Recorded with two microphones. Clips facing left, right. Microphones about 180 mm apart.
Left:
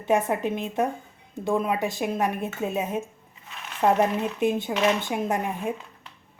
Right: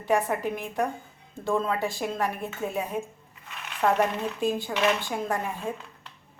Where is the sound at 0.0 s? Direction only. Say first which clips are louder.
Left 2 dB; 20° left (ahead or behind).